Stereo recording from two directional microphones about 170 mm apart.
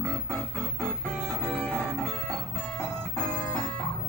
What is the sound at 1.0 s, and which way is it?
Music, 5° left (ahead or behind).